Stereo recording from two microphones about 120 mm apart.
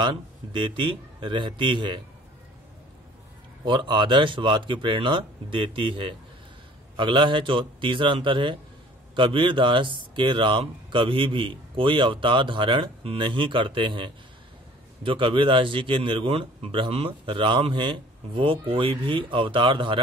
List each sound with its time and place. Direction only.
0.0 s speech: 40° right (ahead or behind)
3.6 s speech: 40° right (ahead or behind)